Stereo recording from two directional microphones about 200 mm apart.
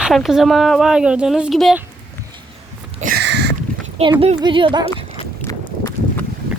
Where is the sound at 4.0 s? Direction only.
30° right (ahead or behind).